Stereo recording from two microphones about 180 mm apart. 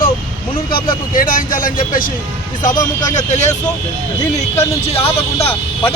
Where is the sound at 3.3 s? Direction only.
40° left (ahead or behind).